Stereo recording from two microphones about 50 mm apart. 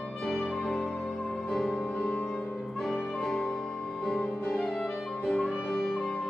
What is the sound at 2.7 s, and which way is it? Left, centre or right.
Music, centre.